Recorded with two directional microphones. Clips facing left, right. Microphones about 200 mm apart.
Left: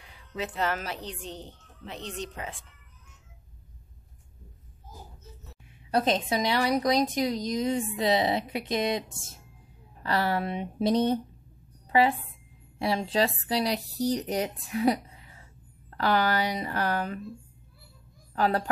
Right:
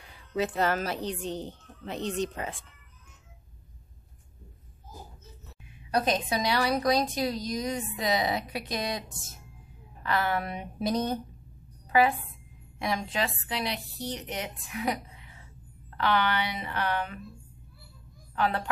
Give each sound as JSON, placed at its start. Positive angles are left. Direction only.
{"t": 0.4, "sound": "a woman's voice", "side_deg": -40}
{"t": 5.9, "sound": "a woman's voice", "side_deg": 25}
{"t": 12.7, "sound": "a woman's voice", "side_deg": 30}
{"t": 18.3, "sound": "a woman's voice", "side_deg": 40}